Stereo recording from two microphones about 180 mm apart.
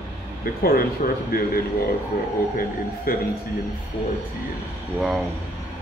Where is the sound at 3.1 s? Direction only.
55° left (ahead or behind).